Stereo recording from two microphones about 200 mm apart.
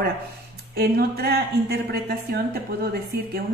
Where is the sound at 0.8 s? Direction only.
50° right (ahead or behind).